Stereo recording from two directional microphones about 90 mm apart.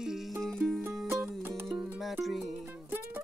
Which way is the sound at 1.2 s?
30° right (ahead or behind).